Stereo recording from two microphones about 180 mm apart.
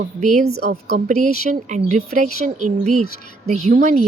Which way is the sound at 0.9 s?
40° right (ahead or behind).